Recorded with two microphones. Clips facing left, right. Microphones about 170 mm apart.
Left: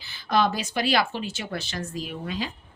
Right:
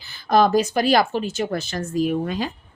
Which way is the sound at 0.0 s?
45° right (ahead or behind).